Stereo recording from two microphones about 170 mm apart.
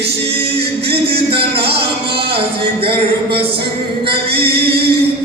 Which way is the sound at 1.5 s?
70° right (ahead or behind).